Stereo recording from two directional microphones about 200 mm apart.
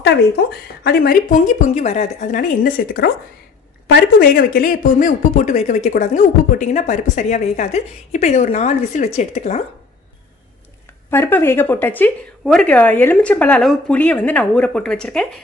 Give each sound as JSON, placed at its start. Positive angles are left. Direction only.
{"t": 0.0, "sound": "speech", "side_deg": 55}
{"t": 1.7, "sound": "speech", "side_deg": 35}
{"t": 11.1, "sound": "a woman's voice", "side_deg": 10}